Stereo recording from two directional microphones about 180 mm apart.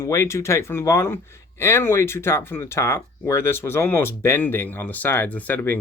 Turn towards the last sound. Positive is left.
turn(degrees=10)  # may be behind; listen again after turning